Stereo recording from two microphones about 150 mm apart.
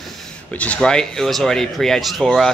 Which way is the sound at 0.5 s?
10° left (ahead or behind).